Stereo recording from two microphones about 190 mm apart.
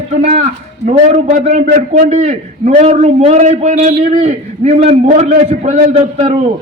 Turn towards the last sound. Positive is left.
turn(degrees=-35)  # may be behind; listen again after turning